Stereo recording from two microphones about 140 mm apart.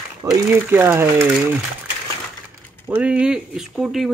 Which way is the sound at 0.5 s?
15° right (ahead or behind).